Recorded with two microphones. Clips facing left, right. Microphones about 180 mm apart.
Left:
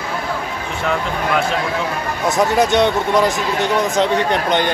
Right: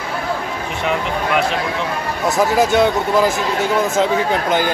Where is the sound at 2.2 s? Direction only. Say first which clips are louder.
Even; centre (ahead or behind).